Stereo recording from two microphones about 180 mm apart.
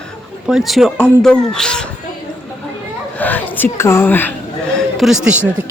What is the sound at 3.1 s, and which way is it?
A woman's voice, 10° left (ahead or behind).